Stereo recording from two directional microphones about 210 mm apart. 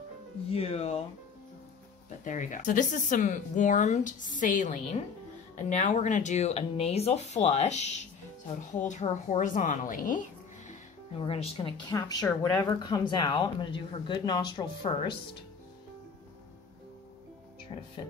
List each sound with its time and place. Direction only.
0.5 s speech: 30° left (ahead or behind)
2.0 s speech: 35° left (ahead or behind)
11.1 s speech: 25° left (ahead or behind)